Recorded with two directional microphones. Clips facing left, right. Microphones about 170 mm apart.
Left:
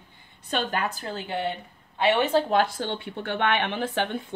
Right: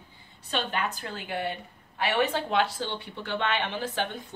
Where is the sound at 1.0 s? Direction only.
30° left (ahead or behind).